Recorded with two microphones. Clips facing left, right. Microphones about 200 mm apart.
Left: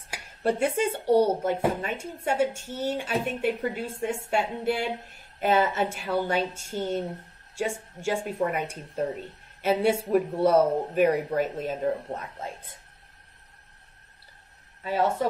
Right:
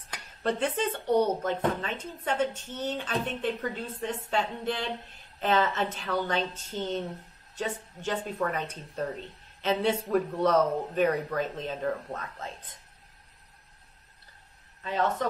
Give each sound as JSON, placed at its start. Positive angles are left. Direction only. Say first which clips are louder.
{"t": 0.1, "sound": "a woman's voice", "louder": "left 3 dB", "side_deg": 10}
{"t": 11.8, "sound": "a woman's voice", "louder": "left 3 dB", "side_deg": 20}
{"t": 14.8, "sound": "a woman's voice", "louder": "left 3 dB", "side_deg": 10}